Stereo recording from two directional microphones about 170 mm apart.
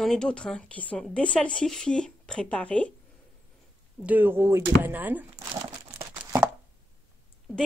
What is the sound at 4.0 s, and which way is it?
Speech, 10° right (ahead or behind).